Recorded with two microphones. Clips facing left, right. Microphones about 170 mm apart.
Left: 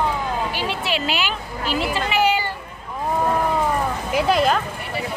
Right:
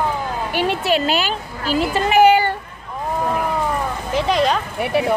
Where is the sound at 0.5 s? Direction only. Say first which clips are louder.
Right 6 dB; 50° right (ahead or behind).